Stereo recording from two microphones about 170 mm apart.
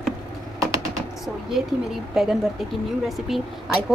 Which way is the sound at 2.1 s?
Centre (ahead or behind).